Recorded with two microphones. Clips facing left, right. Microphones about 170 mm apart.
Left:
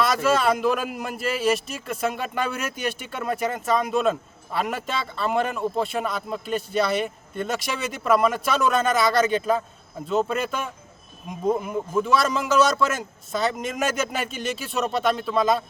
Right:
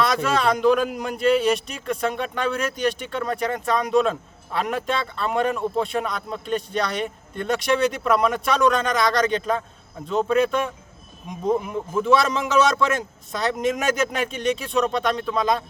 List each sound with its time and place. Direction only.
0.0 s a man's voice: 5° left (ahead or behind)